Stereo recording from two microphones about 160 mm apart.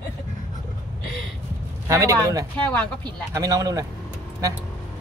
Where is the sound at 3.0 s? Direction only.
20° right (ahead or behind).